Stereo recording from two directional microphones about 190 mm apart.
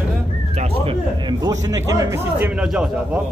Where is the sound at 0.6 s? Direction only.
25° right (ahead or behind); by 3.2 s 5° right (ahead or behind).